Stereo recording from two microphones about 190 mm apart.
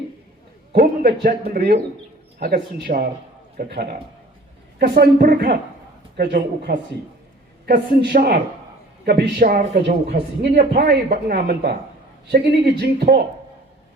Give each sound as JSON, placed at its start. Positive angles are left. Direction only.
{"t": 0.7, "sound": "a man's voice", "side_deg": -55}